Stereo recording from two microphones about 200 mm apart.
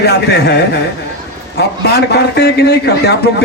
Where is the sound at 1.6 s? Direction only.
55° left (ahead or behind).